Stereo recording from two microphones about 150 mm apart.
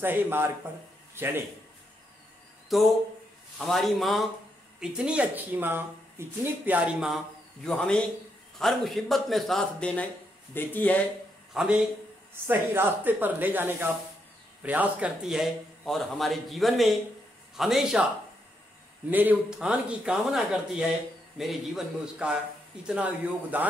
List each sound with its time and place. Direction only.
0.0 s a man's voice: 15° right (ahead or behind)
2.7 s speech: centre (ahead or behind)
11.5 s speech: 5° right (ahead or behind)
12.4 s speech: 15° right (ahead or behind)
19.0 s speech: 10° right (ahead or behind)